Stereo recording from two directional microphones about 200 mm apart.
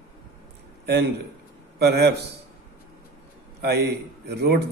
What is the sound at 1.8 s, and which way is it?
Speech, 55° right (ahead or behind).